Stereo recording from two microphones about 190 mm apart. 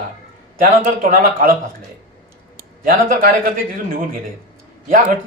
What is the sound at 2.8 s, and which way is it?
A man's voice, 45° right (ahead or behind).